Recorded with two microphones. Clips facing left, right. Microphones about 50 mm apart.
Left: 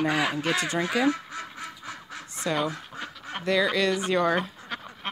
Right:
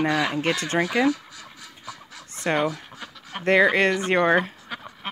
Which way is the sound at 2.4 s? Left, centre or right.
Right.